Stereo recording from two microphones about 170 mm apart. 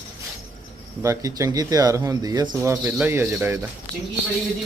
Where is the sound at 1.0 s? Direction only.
20° right (ahead or behind).